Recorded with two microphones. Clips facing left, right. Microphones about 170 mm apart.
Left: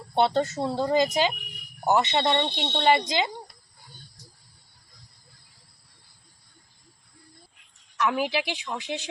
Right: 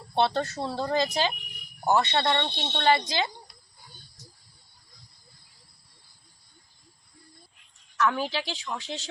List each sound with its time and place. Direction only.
0.1 s speech: 15° left (ahead or behind)
7.9 s speech: 10° left (ahead or behind)